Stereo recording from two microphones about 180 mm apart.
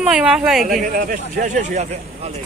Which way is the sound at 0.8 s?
50° right (ahead or behind).